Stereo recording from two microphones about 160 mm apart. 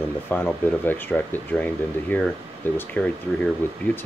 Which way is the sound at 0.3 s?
10° left (ahead or behind).